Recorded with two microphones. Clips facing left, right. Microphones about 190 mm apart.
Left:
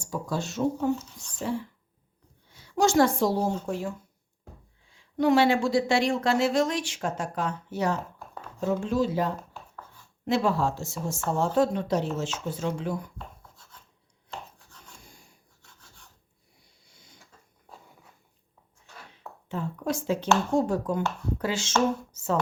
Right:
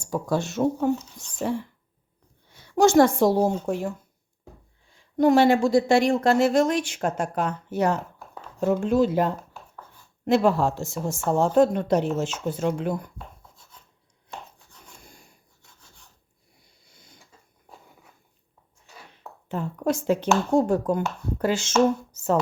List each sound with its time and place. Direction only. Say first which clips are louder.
0.1 s speech: right 5 dB; 55° right (ahead or behind)
4.9 s speech: right 3 dB; 45° right (ahead or behind)
19.5 s a sound: right 4 dB; 55° right (ahead or behind)
20.7 s speech: right 4 dB; 55° right (ahead or behind)